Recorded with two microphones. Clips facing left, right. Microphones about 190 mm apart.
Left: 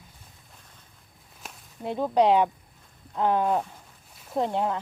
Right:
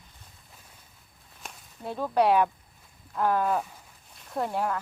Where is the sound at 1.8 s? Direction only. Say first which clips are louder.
Left 3 dB; 20° left (ahead or behind).